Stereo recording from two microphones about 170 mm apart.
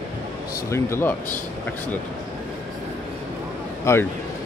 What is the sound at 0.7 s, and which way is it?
Speech, 15° left (ahead or behind).